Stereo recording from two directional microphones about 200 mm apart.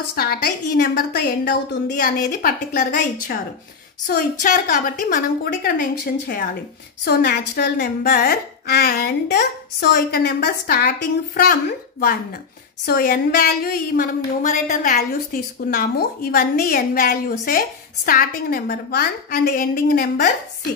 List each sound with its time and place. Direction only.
0.1 s a woman's voice: 50° left (ahead or behind)
12.8 s a woman's voice: 45° left (ahead or behind)